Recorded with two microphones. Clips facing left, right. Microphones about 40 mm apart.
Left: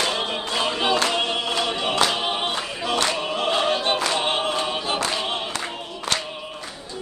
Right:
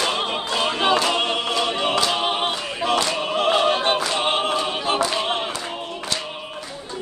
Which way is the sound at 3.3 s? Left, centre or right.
Right.